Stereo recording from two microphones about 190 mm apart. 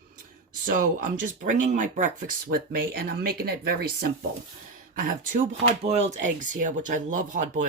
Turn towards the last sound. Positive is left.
turn(degrees=-40)  # may be behind; listen again after turning